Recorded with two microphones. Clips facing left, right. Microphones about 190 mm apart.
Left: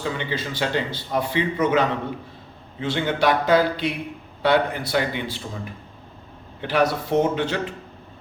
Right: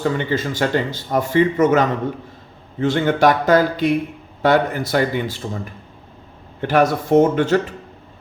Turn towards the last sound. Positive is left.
turn(degrees=-50)  # may be behind; listen again after turning